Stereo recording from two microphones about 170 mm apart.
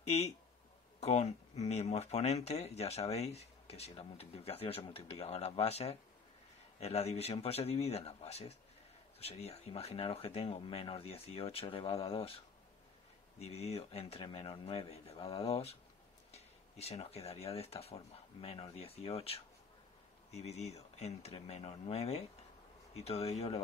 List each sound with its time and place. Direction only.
1.0 s speech: 40° left (ahead or behind)
13.4 s speech: 35° left (ahead or behind)